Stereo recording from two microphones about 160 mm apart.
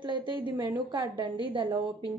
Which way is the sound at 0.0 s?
30° right (ahead or behind).